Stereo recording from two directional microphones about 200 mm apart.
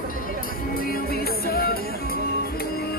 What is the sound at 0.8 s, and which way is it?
Music, 50° left (ahead or behind).